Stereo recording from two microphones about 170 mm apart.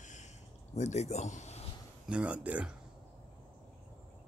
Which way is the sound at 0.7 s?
40° left (ahead or behind).